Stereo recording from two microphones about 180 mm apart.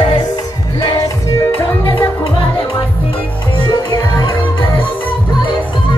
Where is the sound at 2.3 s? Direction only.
30° left (ahead or behind).